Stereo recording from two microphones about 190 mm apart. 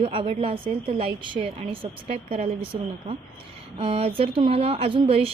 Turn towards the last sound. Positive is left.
turn(degrees=-30)  # may be behind; listen again after turning